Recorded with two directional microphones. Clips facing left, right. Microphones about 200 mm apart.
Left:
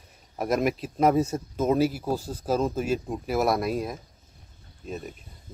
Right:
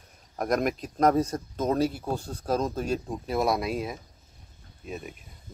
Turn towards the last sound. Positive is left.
turn(degrees=-5)  # may be behind; listen again after turning